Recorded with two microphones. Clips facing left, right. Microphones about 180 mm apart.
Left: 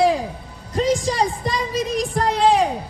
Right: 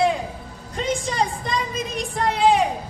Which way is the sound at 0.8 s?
35° left (ahead or behind).